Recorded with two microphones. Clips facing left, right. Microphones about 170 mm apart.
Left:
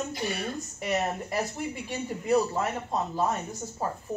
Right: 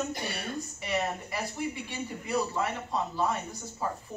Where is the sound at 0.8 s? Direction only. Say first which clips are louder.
Left 3 dB; 45° left (ahead or behind).